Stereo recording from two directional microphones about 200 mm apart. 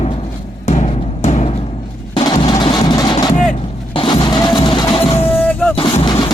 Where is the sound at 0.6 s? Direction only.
35° left (ahead or behind).